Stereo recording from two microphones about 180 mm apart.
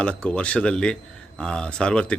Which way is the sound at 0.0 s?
5° left (ahead or behind).